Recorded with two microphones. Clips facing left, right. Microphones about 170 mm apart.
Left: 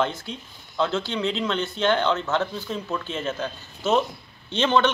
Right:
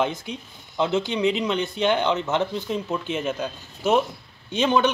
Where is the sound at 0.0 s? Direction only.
15° right (ahead or behind).